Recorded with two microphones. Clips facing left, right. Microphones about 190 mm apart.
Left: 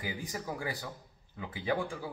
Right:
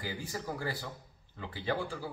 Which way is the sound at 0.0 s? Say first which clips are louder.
Even; 15° left (ahead or behind).